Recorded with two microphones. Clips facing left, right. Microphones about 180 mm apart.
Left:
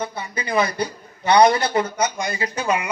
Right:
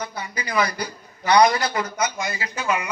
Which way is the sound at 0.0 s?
25° left (ahead or behind).